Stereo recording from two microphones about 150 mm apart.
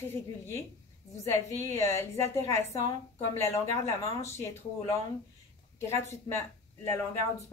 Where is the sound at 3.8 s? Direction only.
20° left (ahead or behind).